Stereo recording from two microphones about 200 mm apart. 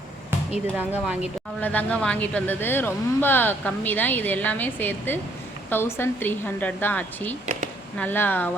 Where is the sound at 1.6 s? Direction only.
10° left (ahead or behind).